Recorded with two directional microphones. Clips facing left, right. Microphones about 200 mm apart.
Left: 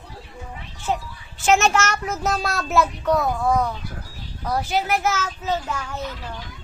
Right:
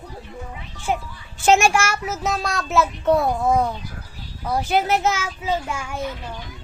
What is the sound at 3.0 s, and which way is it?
Speech, 25° right (ahead or behind).